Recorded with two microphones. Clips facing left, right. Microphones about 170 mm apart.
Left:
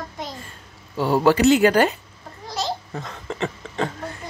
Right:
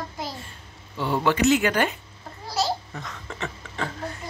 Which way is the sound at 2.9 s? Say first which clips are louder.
Left 6 dB; 30° left (ahead or behind).